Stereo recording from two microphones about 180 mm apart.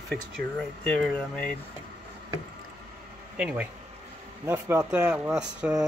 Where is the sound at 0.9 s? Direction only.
5° left (ahead or behind).